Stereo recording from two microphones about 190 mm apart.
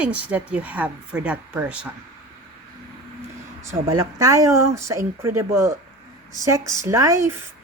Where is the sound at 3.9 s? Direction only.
15° right (ahead or behind).